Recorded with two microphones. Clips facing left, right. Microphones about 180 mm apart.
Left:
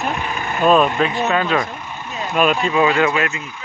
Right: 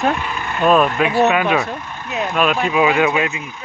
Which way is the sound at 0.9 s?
10° right (ahead or behind).